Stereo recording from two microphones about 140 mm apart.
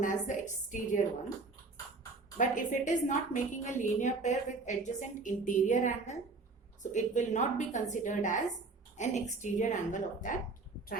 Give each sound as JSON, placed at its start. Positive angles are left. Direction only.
{"t": 0.0, "sound": "a woman's voice", "side_deg": 65}
{"t": 2.4, "sound": "a woman's voice", "side_deg": 65}